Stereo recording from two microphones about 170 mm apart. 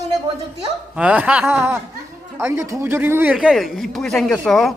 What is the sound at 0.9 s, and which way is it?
A man's voice, 10° right (ahead or behind).